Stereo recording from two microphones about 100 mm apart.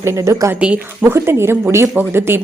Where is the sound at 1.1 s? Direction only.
25° right (ahead or behind).